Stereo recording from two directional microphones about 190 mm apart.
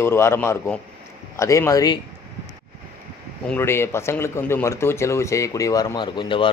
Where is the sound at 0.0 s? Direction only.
15° left (ahead or behind).